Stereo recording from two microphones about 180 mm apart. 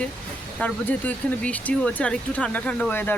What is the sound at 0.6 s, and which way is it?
Speech, 10° left (ahead or behind).